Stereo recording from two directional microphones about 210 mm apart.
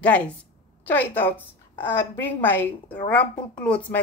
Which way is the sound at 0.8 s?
10° left (ahead or behind).